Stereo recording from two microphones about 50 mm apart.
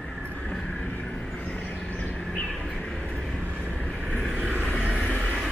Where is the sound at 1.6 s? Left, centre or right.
Left.